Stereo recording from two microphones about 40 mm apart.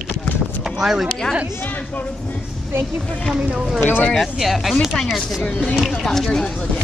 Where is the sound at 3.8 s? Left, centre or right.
Left.